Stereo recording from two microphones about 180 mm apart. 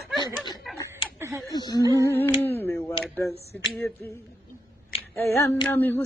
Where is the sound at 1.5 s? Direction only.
20° left (ahead or behind).